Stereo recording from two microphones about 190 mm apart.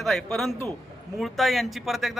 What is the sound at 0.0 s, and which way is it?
A man's voice, centre (ahead or behind).